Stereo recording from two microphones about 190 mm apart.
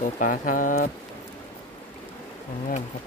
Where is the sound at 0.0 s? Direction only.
45° left (ahead or behind).